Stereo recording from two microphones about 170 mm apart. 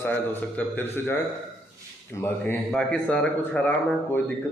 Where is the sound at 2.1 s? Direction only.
15° left (ahead or behind).